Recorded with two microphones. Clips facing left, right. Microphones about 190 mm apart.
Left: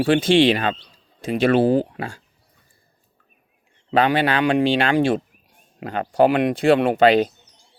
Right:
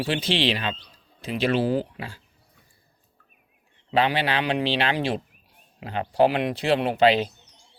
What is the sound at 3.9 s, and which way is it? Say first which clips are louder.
Speech: left 5 dB; 45° left (ahead or behind).